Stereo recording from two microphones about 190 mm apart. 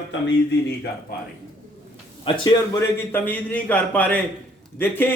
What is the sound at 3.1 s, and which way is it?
A man's voice, 10° left (ahead or behind).